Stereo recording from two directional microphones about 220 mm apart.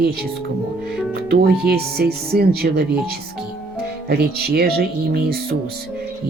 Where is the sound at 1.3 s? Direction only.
45° right (ahead or behind).